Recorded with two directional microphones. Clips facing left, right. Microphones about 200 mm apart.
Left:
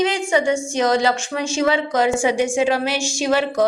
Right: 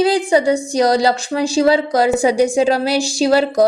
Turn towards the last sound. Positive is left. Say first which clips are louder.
# right 5 dB
turn(degrees=-35)  # may be behind; listen again after turning